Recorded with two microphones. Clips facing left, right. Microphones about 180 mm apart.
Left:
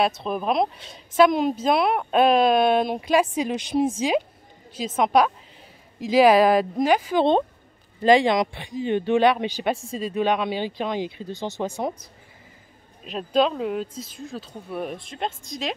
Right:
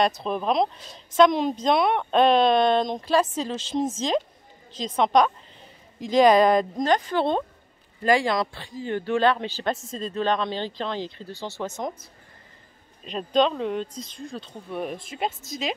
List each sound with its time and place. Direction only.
0.0 s a woman's voice: 5° left (ahead or behind)
8.0 s a woman's voice: 20° left (ahead or behind); by 15.7 s centre (ahead or behind)